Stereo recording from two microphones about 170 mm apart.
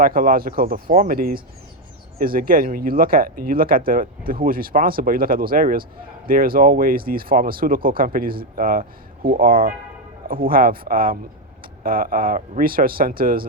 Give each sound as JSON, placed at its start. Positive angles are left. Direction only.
{"t": 0.0, "sound": "speech", "side_deg": -55}